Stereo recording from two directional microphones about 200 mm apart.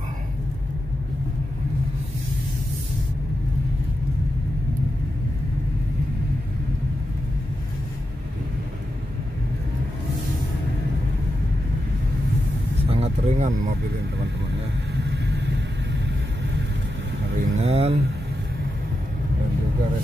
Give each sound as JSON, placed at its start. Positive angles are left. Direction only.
{"t": 12.9, "sound": "vehicle", "side_deg": -35}
{"t": 14.9, "sound": "vehicle", "side_deg": -55}
{"t": 17.3, "sound": "vehicle", "side_deg": -60}
{"t": 17.7, "sound": "speech", "side_deg": -30}